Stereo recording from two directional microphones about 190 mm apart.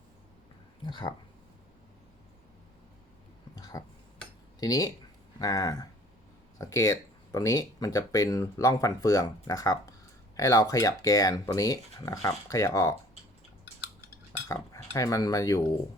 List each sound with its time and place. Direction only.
0.9 s speech: 25° left (ahead or behind)
3.5 s a sound: 20° left (ahead or behind)
4.6 s speech: 20° left (ahead or behind)
14.4 s cutlery: 15° left (ahead or behind)